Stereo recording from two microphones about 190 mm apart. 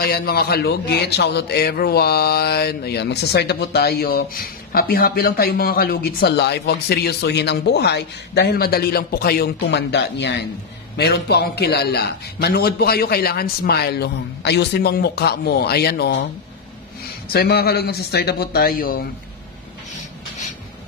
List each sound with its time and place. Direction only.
0.0 s a man's voice: 55° left (ahead or behind)
17.3 s a man's voice: 55° left (ahead or behind)